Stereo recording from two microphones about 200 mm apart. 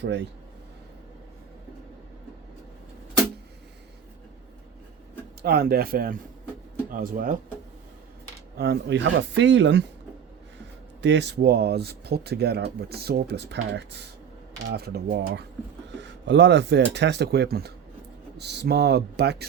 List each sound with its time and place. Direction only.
5.4 s speech: 50° right (ahead or behind)
8.5 s speech: 55° right (ahead or behind)
11.0 s speech: 60° right (ahead or behind)